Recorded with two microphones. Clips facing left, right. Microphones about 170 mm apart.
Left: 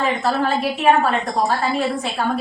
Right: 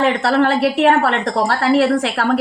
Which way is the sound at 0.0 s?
80° right.